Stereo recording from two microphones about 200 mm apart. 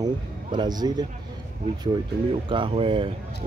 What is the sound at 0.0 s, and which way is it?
Speech, 20° right (ahead or behind).